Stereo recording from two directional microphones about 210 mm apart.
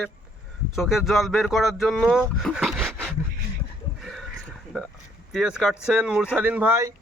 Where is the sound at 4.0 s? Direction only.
Centre (ahead or behind).